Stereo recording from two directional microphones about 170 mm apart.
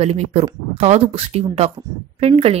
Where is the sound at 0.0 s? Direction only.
40° right (ahead or behind).